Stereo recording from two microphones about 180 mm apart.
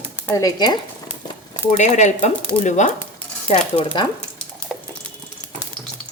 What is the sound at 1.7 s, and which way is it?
Speech, 40° left (ahead or behind).